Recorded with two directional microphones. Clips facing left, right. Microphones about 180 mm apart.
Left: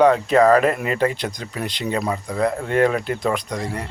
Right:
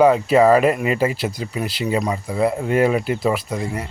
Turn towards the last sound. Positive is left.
turn(degrees=-5)  # may be behind; listen again after turning